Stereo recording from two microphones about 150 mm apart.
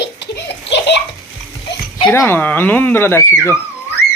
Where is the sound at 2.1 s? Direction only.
15° left (ahead or behind).